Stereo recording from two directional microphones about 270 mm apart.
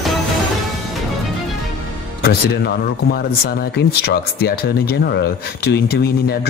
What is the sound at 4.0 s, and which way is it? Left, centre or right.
Speech, left.